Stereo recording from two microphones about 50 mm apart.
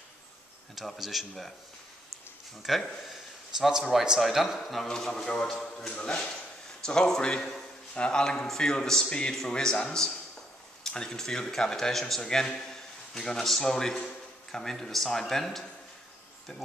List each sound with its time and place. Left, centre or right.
0.7 s speech: centre
2.7 s speech: centre
3.1 s a sound: centre
4.2 s a man's voice: centre